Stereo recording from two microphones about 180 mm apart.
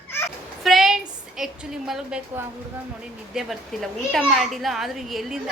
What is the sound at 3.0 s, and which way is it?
A child's voice, centre (ahead or behind).